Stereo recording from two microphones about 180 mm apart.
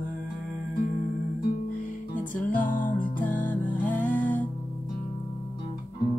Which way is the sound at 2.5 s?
45° left (ahead or behind).